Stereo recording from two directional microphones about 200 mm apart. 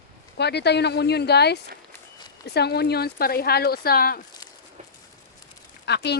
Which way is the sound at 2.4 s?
55° left (ahead or behind).